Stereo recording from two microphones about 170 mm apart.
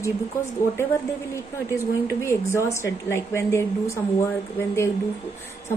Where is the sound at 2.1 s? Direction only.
15° left (ahead or behind).